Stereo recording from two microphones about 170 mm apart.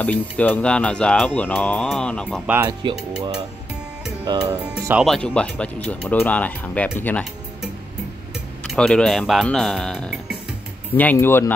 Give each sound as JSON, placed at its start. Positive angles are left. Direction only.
{"t": 0.0, "sound": "speech", "side_deg": 10}
{"t": 2.2, "sound": "speech", "side_deg": -5}
{"t": 2.6, "sound": "speech", "side_deg": -30}
{"t": 4.5, "sound": "speech", "side_deg": -15}
{"t": 5.0, "sound": "speech", "side_deg": 5}
{"t": 8.6, "sound": "speech", "side_deg": 5}